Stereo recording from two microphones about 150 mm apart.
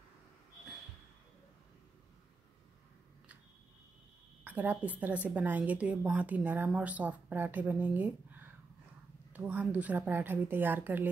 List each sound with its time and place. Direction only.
4.5 s a woman's voice: 10° right (ahead or behind)